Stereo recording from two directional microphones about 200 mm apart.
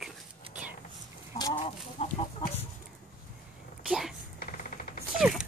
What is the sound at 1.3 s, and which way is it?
Chicken, 20° left (ahead or behind).